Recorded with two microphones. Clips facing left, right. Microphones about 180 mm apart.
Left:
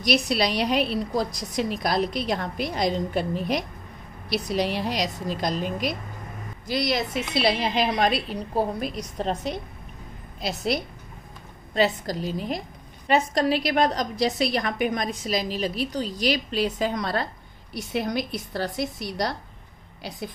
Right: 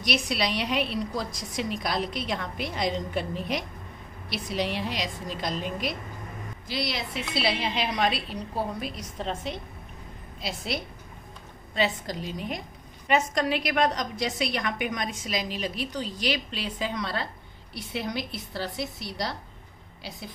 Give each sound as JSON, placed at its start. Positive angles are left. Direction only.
{"t": 0.0, "sound": "a woman's voice", "side_deg": 35}